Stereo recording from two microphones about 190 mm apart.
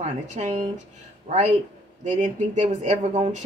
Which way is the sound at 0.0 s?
40° right (ahead or behind).